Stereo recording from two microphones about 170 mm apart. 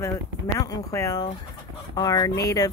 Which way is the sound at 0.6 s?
20° left (ahead or behind).